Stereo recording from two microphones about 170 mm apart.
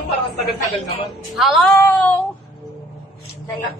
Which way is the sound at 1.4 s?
Centre (ahead or behind).